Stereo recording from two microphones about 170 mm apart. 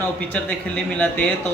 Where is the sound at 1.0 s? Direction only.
5° left (ahead or behind).